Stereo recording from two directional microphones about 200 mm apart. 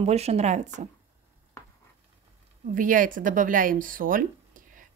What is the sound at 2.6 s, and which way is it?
Speech, 40° right (ahead or behind).